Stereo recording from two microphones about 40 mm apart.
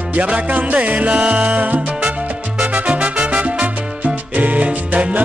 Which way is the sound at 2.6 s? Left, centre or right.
Right.